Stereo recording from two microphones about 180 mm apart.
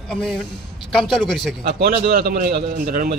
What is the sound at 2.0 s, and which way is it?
A man's voice, 60° right (ahead or behind).